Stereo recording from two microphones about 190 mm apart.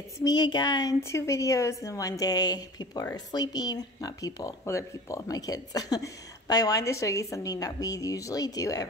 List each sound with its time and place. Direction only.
0.2 s speech: 20° left (ahead or behind)